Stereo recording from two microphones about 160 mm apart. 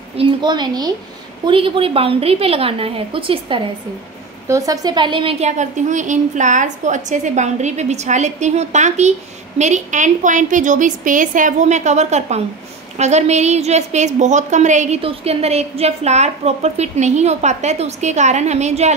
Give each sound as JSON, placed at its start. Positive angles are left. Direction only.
{"t": 0.2, "sound": "a woman's voice", "side_deg": -25}
{"t": 4.5, "sound": "a woman's voice", "side_deg": -20}
{"t": 5.5, "sound": "a woman's voice", "side_deg": -50}
{"t": 15.0, "sound": "a woman's voice", "side_deg": -35}